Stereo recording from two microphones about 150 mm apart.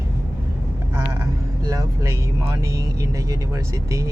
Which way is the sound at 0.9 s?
15° right (ahead or behind).